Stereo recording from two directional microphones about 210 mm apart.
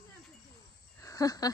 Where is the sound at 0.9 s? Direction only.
15° left (ahead or behind).